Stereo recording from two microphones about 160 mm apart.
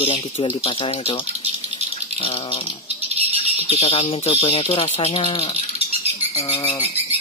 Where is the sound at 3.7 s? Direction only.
35° left (ahead or behind).